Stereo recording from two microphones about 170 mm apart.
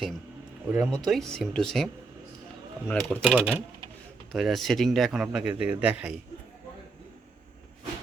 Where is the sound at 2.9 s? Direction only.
5° left (ahead or behind).